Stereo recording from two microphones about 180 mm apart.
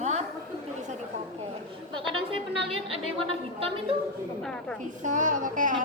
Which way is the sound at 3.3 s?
30° right (ahead or behind).